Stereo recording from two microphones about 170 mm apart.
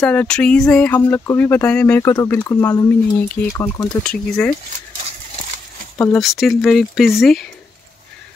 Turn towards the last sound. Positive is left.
turn(degrees=0)  # may be behind; listen again after turning